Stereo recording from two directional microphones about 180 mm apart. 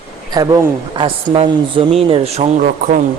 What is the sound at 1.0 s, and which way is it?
A man's voice, 30° right (ahead or behind).